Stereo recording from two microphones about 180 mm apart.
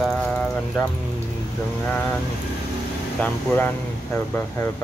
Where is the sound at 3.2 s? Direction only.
10° left (ahead or behind).